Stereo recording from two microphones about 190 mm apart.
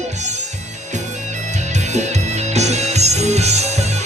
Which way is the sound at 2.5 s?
35° right (ahead or behind).